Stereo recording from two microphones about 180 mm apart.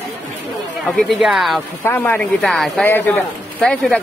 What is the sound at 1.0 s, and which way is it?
Speech, centre (ahead or behind).